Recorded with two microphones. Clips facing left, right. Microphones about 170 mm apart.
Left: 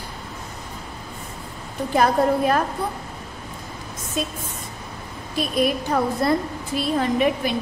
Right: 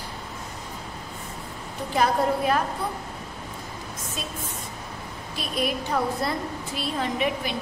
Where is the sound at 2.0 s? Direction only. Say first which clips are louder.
Left 4 dB; 50° left (ahead or behind).